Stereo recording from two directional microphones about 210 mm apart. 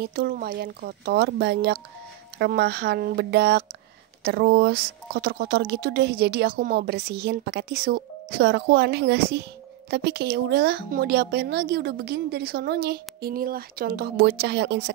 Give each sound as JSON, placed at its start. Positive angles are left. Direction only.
{"t": 0.0, "sound": "speech", "side_deg": -45}